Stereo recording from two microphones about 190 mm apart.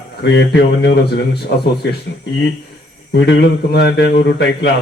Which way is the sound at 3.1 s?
65° left (ahead or behind).